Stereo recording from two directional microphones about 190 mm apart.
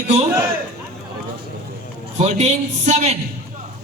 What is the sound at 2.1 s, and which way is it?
A man's voice, 35° right (ahead or behind).